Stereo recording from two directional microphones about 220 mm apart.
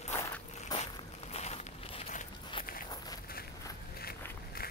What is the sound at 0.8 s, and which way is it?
Walk, 30° left (ahead or behind).